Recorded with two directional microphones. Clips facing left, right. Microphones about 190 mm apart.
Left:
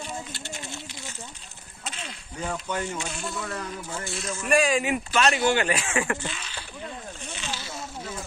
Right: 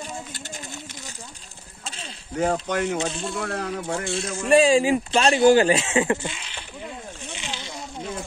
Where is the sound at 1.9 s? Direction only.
30° right (ahead or behind).